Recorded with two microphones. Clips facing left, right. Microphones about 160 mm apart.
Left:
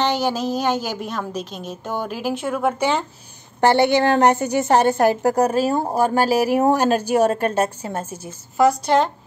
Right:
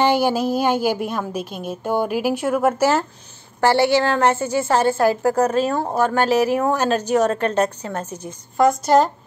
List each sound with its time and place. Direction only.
0.0 s a woman's voice: 10° right (ahead or behind)
3.6 s a woman's voice: 20° left (ahead or behind); by 9.1 s centre (ahead or behind)